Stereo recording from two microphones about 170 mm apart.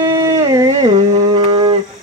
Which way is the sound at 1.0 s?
25° right (ahead or behind).